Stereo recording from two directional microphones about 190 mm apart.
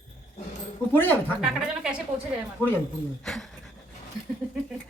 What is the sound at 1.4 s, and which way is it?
Speech, 5° right (ahead or behind).